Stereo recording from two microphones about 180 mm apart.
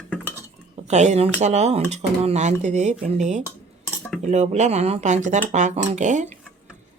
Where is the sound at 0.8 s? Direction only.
40° right (ahead or behind).